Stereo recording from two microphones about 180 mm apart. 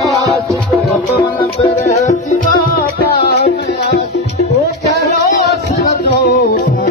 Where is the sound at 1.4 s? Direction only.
35° left (ahead or behind).